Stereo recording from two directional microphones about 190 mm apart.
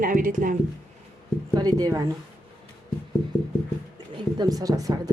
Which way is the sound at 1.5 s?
20° right (ahead or behind).